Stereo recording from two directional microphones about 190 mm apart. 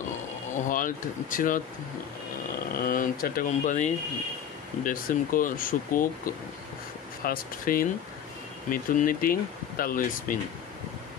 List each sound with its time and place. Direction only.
0.7 s speech: 45° left (ahead or behind)
2.7 s speech: 50° left (ahead or behind)